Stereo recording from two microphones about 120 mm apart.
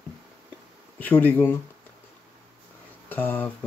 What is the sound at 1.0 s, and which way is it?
Speech, 15° left (ahead or behind).